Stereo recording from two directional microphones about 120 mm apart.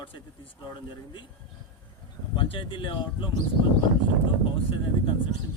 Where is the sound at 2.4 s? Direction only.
45° left (ahead or behind).